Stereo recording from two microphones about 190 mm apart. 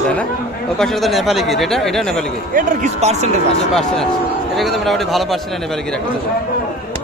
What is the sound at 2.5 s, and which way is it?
Speech, 40° right (ahead or behind).